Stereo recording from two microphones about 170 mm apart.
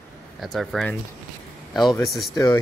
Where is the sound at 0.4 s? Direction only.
Centre (ahead or behind).